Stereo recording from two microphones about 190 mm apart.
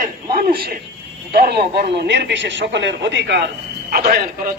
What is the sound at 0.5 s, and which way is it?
A man's voice, 55° right (ahead or behind).